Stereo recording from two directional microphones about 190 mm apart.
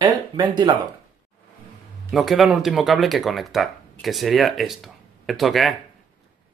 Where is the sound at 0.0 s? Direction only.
25° right (ahead or behind).